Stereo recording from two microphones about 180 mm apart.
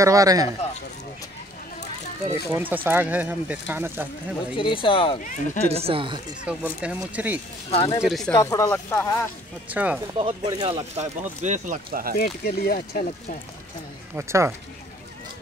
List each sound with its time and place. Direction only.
0.0 s speech: 20° right (ahead or behind)
2.5 s speech: 10° right (ahead or behind)
4.6 s speech: 30° left (ahead or behind)
5.2 s speech: 45° left (ahead or behind)
5.7 s speech: 30° right (ahead or behind)
6.4 s speech: 5° right (ahead or behind)
8.4 s speech: 20° left (ahead or behind)
9.7 s speech: 10° right (ahead or behind)
10.1 s speech: 25° right (ahead or behind); by 12.2 s 55° right (ahead or behind)
12.2 s speech: 60° left (ahead or behind)
14.1 s speech: 15° right (ahead or behind)